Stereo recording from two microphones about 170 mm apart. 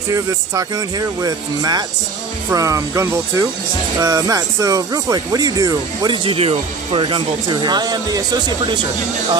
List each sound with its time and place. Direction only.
0.1 s speech: 20° right (ahead or behind)